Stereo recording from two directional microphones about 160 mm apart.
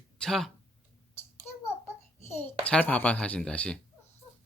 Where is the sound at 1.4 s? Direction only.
15° left (ahead or behind).